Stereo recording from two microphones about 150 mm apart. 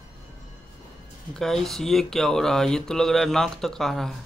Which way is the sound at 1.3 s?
5° left (ahead or behind).